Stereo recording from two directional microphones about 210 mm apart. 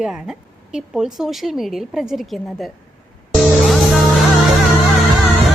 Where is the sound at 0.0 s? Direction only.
5° right (ahead or behind).